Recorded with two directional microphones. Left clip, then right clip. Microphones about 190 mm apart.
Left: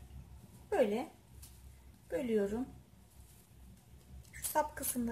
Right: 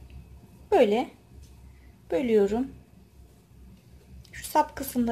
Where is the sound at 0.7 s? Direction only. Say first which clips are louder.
Right 11 dB; 35° right (ahead or behind).